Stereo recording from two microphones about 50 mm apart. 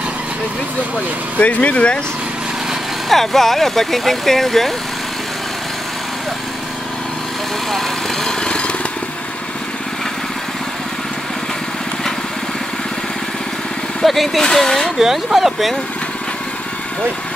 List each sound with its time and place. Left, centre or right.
1.4 s speech: left
3.1 s speech: centre
7.7 s speech: centre
8.5 s motorcycle: left
14.0 s speech: centre
15.0 s speech: centre